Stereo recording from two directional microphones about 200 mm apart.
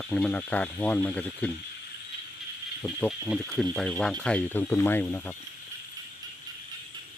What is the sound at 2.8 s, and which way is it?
Speech, centre (ahead or behind).